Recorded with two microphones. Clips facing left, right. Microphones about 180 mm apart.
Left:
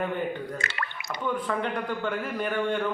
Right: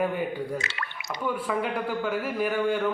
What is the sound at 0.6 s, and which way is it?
Drip, 55° left (ahead or behind).